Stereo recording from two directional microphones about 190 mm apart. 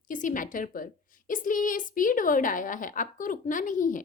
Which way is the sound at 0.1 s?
45° left (ahead or behind).